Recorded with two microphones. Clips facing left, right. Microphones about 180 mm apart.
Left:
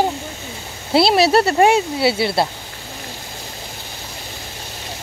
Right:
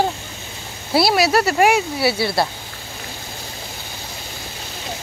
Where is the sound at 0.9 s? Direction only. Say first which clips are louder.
Left 3 dB; 25° left (ahead or behind).